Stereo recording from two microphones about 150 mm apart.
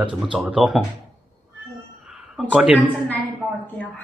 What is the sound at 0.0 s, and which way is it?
Speech, 5° right (ahead or behind).